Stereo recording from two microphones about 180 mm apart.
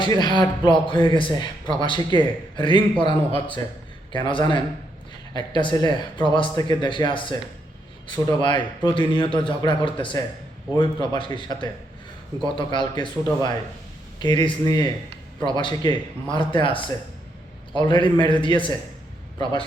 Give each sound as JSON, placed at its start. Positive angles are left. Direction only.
{"t": 0.0, "sound": "a man's voice", "side_deg": 25}